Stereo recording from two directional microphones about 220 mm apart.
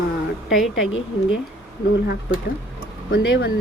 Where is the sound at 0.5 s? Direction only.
Centre (ahead or behind).